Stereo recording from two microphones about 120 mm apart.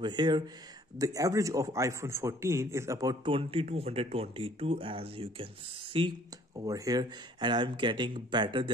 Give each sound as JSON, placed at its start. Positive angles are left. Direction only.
{"t": 0.0, "sound": "speech", "side_deg": -40}
{"t": 0.9, "sound": "a man's voice", "side_deg": -30}
{"t": 3.3, "sound": "speech", "side_deg": -50}
{"t": 6.5, "sound": "speech", "side_deg": -30}